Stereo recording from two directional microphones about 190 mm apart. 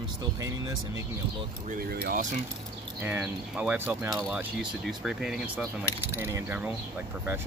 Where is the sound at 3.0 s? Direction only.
10° right (ahead or behind).